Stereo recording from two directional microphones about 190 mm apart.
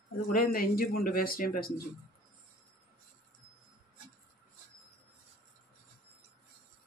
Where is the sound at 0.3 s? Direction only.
50° left (ahead or behind).